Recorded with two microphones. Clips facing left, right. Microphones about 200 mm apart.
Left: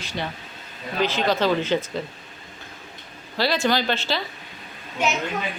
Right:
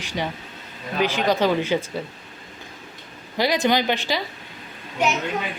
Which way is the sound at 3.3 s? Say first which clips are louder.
Right 2 dB; 15° right (ahead or behind).